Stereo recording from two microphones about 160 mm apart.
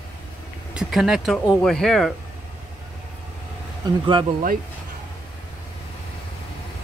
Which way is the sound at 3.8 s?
30° right (ahead or behind).